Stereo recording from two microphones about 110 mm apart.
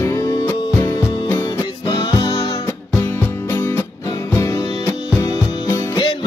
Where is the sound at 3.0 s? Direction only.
20° left (ahead or behind).